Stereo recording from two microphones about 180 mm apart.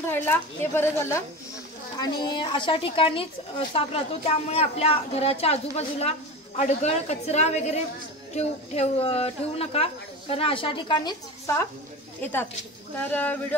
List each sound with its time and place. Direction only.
0.0 s a woman's voice: 10° left (ahead or behind)